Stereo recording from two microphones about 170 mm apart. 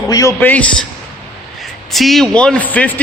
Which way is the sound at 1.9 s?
Centre (ahead or behind).